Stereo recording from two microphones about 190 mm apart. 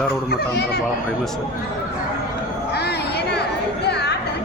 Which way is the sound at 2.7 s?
60° left (ahead or behind).